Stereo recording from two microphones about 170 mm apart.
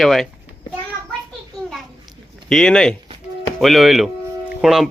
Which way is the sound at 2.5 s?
5° left (ahead or behind).